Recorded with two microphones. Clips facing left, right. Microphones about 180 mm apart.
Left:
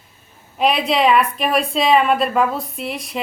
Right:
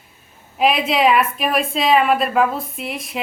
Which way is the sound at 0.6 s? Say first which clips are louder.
Even; centre (ahead or behind).